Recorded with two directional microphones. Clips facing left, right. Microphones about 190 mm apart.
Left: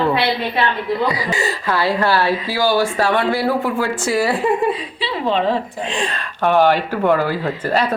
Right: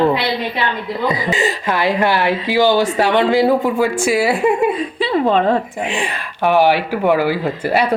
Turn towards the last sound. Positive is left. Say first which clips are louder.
# right 2 dB
turn(degrees=-10)  # may be behind; listen again after turning